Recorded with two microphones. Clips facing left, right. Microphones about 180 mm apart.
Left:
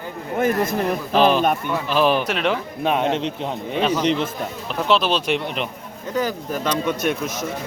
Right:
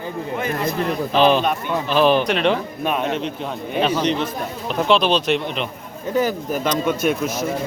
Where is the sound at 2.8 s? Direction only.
20° left (ahead or behind).